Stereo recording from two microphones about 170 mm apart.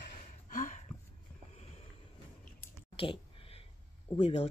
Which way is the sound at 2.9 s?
30° left (ahead or behind).